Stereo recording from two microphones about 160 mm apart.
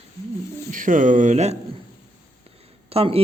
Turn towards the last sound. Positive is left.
turn(degrees=-35)  # may be behind; listen again after turning